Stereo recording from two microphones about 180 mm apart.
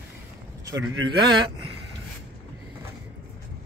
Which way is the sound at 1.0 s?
25° right (ahead or behind).